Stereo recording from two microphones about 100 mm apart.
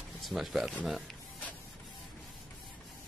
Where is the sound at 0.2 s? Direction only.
Centre (ahead or behind).